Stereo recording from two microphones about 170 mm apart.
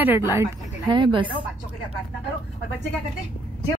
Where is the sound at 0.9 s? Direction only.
30° right (ahead or behind).